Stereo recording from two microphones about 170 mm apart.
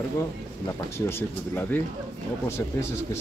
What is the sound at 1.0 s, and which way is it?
Speech, 15° left (ahead or behind).